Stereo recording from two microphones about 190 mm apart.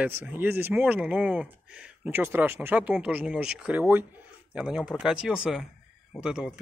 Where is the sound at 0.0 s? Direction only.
10° right (ahead or behind).